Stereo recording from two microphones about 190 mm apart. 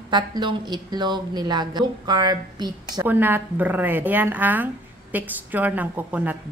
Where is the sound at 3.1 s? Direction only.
10° right (ahead or behind).